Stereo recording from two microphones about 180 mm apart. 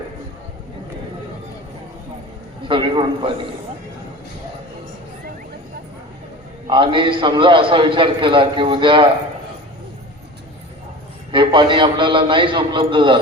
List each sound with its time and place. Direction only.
2.6 s a man's voice: 30° right (ahead or behind)
6.7 s a man's voice: 25° right (ahead or behind)
11.3 s a man's voice: 25° right (ahead or behind)